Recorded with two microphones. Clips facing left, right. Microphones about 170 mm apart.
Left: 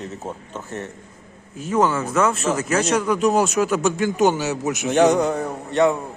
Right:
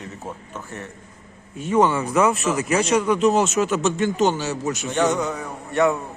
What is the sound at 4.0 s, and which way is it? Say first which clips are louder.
A man's voice: left 2 dB; 10° left (ahead or behind).